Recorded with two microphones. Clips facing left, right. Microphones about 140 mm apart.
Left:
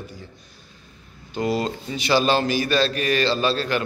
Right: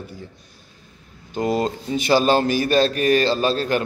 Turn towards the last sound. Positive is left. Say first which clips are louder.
# right 2 dB
turn(degrees=-45)  # may be behind; listen again after turning